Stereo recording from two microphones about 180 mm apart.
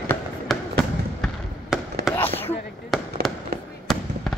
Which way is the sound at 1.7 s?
5° right (ahead or behind).